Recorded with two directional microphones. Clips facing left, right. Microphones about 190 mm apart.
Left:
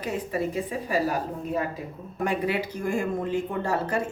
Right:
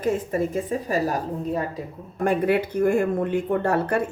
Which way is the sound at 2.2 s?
55° right (ahead or behind).